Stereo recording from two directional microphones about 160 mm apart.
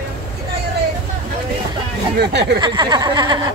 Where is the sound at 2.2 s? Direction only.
90° right.